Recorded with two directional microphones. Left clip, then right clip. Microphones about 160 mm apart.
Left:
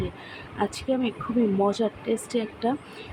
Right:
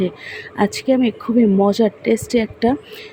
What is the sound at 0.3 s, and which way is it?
Speech, 40° right (ahead or behind).